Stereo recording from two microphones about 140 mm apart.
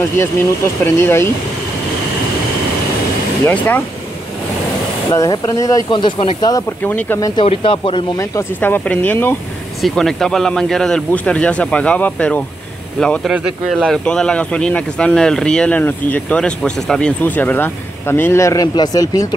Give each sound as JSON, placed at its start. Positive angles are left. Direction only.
{"t": 0.9, "sound": "speech", "side_deg": 20}
{"t": 3.4, "sound": "speech", "side_deg": 15}
{"t": 5.1, "sound": "speech", "side_deg": 25}
{"t": 6.8, "sound": "speech", "side_deg": 15}
{"t": 7.2, "sound": "speech", "side_deg": 25}
{"t": 7.4, "sound": "speech", "side_deg": 40}
{"t": 8.2, "sound": "speech", "side_deg": 15}
{"t": 9.8, "sound": "speech", "side_deg": 0}
{"t": 13.3, "sound": "speech", "side_deg": -10}
{"t": 13.7, "sound": "speech", "side_deg": 5}